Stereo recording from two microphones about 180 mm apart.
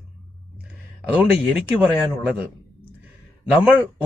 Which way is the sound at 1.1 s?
5° right (ahead or behind).